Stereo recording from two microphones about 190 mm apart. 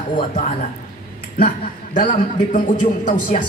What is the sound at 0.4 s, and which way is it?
Speech, 40° left (ahead or behind).